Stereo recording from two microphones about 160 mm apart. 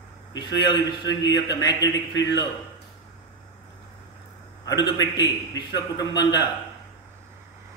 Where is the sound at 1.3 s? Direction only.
90° left.